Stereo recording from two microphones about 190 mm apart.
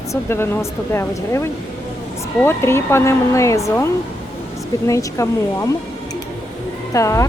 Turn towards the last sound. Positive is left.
turn(degrees=15)  # may be behind; listen again after turning